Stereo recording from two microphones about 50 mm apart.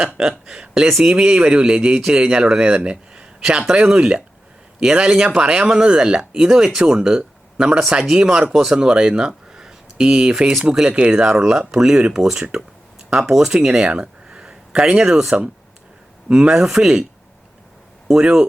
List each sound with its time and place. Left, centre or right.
0.0 s speech: centre
11.2 s speech: centre
18.1 s speech: centre